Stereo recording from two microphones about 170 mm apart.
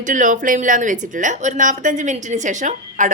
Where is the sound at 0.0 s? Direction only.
50° right (ahead or behind).